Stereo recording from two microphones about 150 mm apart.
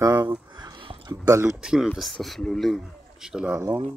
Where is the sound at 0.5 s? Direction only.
30° right (ahead or behind).